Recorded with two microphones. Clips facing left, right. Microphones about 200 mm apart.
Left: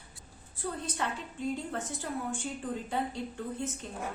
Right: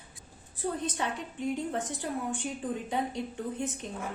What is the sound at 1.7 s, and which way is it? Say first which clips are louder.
Speech: right 2 dB; 20° right (ahead or behind).